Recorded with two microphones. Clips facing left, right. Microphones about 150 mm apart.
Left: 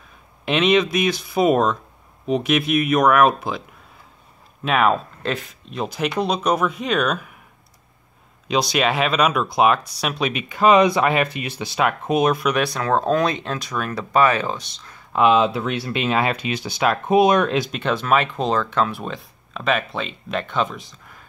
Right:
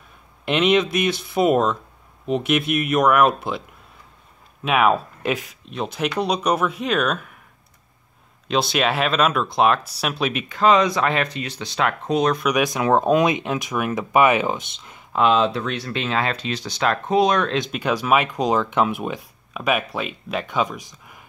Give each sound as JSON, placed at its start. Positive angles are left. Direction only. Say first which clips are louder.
{"t": 0.5, "sound": "speech", "louder": "left 1 dB", "side_deg": 0}
{"t": 4.6, "sound": "speech", "louder": "even", "side_deg": -5}
{"t": 8.5, "sound": "speech", "louder": "left 1 dB", "side_deg": 0}
{"t": 10.5, "sound": "speech", "louder": "left 3 dB", "side_deg": 10}
{"t": 12.4, "sound": "speech", "louder": "right 1 dB", "side_deg": -15}
{"t": 15.1, "sound": "speech", "louder": "left 2 dB", "side_deg": 5}
{"t": 17.6, "sound": "speech", "louder": "even", "side_deg": -5}